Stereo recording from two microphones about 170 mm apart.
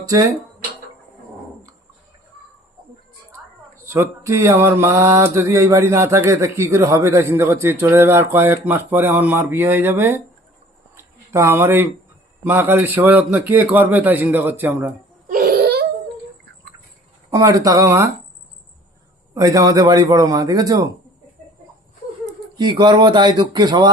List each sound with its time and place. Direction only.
3.8 s mantra: 15° right (ahead or behind)
10.9 s a sound: 15° right (ahead or behind)
12.4 s mantra: 15° right (ahead or behind)
15.3 s wail: 55° right (ahead or behind)
17.3 s a man's voice: 20° right (ahead or behind)
19.3 s a man's voice: 20° right (ahead or behind)
22.5 s a man's voice: 25° right (ahead or behind)